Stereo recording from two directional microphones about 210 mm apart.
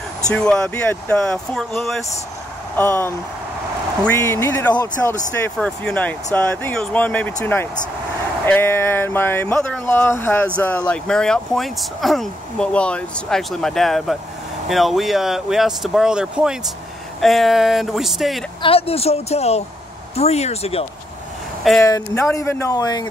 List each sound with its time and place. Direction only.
0.3 s speech: 5° left (ahead or behind)
18.6 s a woman's voice: 25° left (ahead or behind)
21.8 s speech: 15° left (ahead or behind)